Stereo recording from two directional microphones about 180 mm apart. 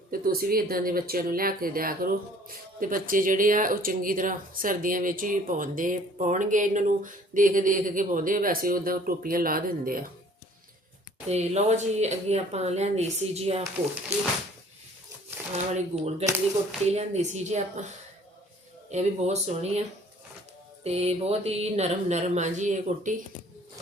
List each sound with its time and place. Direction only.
0.1 s speech: 55° right (ahead or behind)
11.3 s speech: 35° right (ahead or behind)
15.5 s speech: 40° right (ahead or behind)
18.9 s speech: 40° right (ahead or behind)
20.8 s speech: 35° right (ahead or behind)